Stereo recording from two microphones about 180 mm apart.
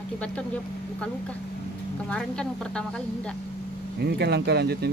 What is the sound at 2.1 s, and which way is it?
Speech, 5° left (ahead or behind).